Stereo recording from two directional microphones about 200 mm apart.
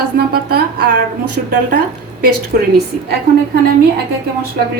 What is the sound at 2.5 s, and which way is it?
Speech, 55° right (ahead or behind).